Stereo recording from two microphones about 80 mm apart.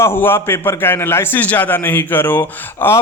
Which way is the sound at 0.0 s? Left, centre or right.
Left.